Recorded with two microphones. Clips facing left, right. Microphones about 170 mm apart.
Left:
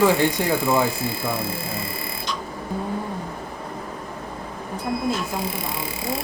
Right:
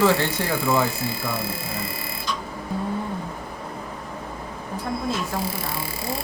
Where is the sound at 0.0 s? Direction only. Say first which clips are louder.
Left 2 dB; 15° left (ahead or behind).